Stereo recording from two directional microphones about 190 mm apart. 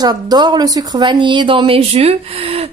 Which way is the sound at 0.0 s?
20° right (ahead or behind).